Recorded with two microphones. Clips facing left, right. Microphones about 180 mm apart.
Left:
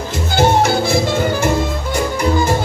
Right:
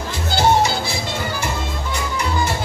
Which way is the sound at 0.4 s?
55° left (ahead or behind).